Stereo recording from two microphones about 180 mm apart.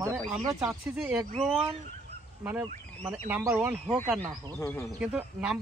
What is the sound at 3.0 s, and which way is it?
Speech, 10° right (ahead or behind).